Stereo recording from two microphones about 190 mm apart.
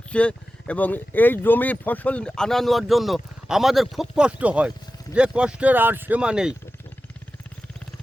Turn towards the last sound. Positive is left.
turn(degrees=-5)  # may be behind; listen again after turning